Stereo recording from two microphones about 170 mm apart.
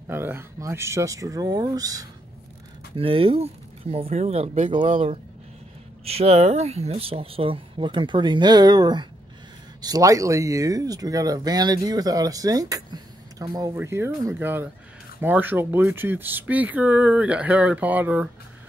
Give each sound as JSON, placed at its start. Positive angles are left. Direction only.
{"t": 0.1, "sound": "speech", "side_deg": -15}
{"t": 3.0, "sound": "speech", "side_deg": -35}